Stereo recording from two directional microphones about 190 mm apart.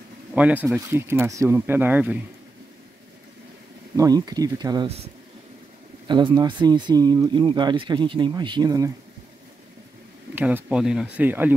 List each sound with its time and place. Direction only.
0.3 s speech: 10° right (ahead or behind)
3.9 s speech: 20° right (ahead or behind)
4.8 s speech: 35° right (ahead or behind)
10.3 s speech: 10° right (ahead or behind)